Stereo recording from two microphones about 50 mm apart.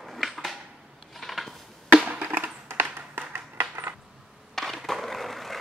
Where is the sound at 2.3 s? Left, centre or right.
Right.